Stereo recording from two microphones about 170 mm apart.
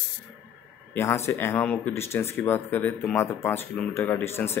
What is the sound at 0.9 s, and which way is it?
Speech, 15° left (ahead or behind).